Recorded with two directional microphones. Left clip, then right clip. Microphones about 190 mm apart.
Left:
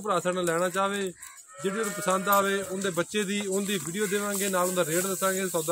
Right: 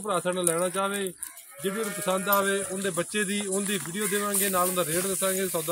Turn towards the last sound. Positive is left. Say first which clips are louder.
# left 1 dB
turn(degrees=10)  # may be behind; listen again after turning